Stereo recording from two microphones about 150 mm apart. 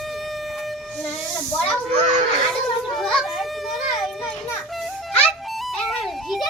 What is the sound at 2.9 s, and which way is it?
Children playing, centre (ahead or behind).